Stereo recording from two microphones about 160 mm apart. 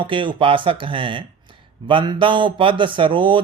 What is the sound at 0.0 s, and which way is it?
Speech, 30° right (ahead or behind).